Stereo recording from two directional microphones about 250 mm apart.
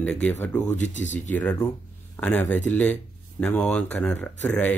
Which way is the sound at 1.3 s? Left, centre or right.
Centre.